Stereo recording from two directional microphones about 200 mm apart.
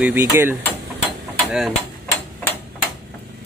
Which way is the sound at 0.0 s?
10° right (ahead or behind).